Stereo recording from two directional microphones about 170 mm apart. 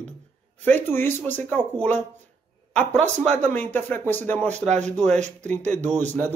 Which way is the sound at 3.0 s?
40° right (ahead or behind).